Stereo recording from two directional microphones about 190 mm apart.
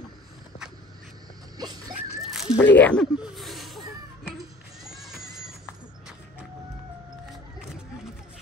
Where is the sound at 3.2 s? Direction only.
Centre (ahead or behind).